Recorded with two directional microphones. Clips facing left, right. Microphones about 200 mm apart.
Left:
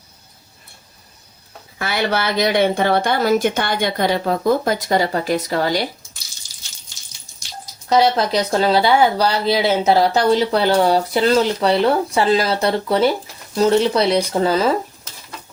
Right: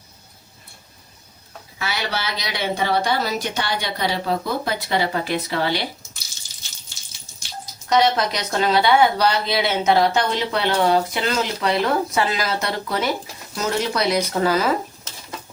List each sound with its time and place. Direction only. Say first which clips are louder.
1.8 s a woman's voice: left 6 dB; 55° left (ahead or behind)
7.9 s speech: left 3 dB; 30° left (ahead or behind)